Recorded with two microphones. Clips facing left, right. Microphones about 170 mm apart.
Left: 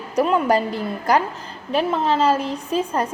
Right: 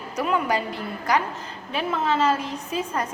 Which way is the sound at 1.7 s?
35° left (ahead or behind).